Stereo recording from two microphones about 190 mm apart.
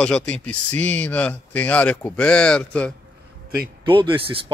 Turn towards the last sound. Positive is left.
turn(degrees=-30)  # may be behind; listen again after turning